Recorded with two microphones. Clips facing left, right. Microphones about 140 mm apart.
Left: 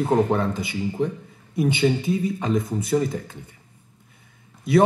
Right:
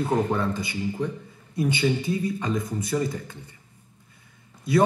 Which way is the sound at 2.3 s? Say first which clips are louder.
Left 4 dB; 25° left (ahead or behind).